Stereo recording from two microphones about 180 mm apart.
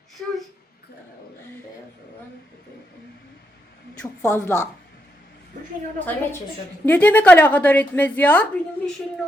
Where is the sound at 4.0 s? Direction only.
15° left (ahead or behind).